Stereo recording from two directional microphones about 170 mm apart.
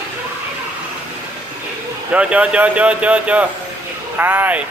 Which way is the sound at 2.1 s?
10° right (ahead or behind).